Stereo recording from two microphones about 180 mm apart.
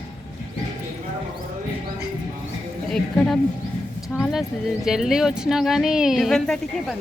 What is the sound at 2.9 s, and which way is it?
Speech, 5° left (ahead or behind).